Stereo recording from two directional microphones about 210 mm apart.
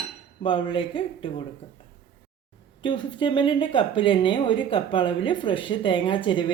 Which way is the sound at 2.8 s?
20° left (ahead or behind).